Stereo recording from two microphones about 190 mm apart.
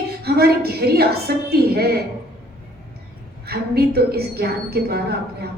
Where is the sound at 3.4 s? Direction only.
55° right (ahead or behind).